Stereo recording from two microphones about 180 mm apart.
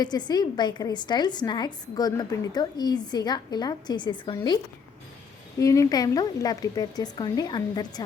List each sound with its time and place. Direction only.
0.0 s a woman's voice: 25° left (ahead or behind)